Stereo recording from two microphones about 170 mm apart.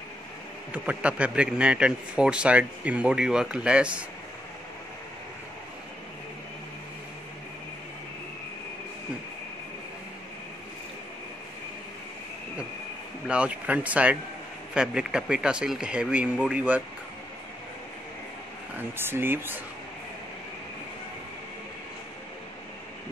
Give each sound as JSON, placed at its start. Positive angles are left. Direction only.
{"t": 0.8, "sound": "a man's voice", "side_deg": -5}
{"t": 13.3, "sound": "a man's voice", "side_deg": -10}
{"t": 18.8, "sound": "a man's voice", "side_deg": -15}